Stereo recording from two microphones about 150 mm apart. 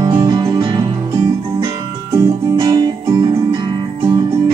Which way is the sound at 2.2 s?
20° right (ahead or behind).